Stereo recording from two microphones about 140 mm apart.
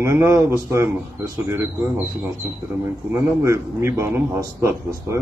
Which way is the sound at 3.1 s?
20° right (ahead or behind).